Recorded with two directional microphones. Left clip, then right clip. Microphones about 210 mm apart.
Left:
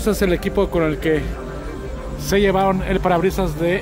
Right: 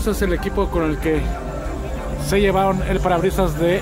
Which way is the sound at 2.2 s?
20° left (ahead or behind).